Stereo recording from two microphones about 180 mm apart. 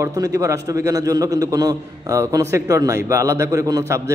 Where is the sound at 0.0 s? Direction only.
20° right (ahead or behind).